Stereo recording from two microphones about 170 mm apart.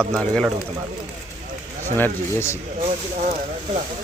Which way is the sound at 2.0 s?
15° left (ahead or behind).